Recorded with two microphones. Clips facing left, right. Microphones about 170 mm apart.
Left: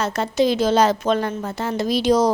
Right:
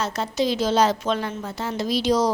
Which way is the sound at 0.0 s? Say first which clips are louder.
Left 4 dB; 55° left (ahead or behind).